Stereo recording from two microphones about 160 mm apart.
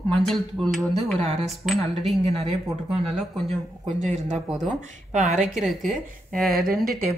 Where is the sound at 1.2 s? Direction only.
45° right (ahead or behind).